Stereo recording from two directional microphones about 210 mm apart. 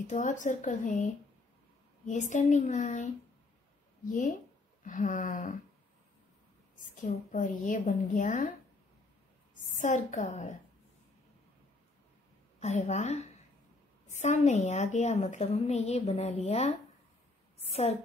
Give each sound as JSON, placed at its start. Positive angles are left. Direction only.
{"t": 0.1, "sound": "a woman's voice", "side_deg": 35}
{"t": 7.0, "sound": "a woman's voice", "side_deg": 35}
{"t": 9.8, "sound": "a woman's voice", "side_deg": 35}
{"t": 12.5, "sound": "a woman's voice", "side_deg": 35}